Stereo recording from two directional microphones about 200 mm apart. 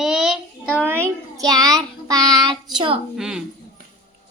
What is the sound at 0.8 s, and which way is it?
A child's voice, 10° right (ahead or behind).